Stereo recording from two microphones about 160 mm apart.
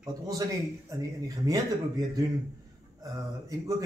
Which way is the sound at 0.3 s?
20° right (ahead or behind).